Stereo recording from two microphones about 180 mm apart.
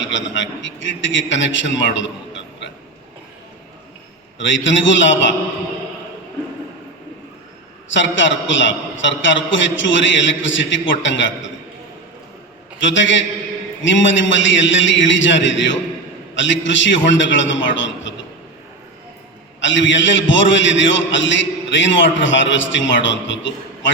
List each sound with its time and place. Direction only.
0.0 s a man's voice: 90° left
4.4 s a man's voice: 90° left
7.9 s a man's voice: 90° left
12.8 s a man's voice: 90° left
19.6 s a man's voice: 90° left